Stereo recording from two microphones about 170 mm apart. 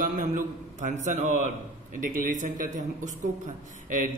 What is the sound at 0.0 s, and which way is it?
A man's voice, 50° right (ahead or behind).